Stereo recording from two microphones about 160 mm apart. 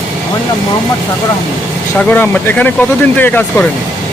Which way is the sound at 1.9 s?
10° left (ahead or behind).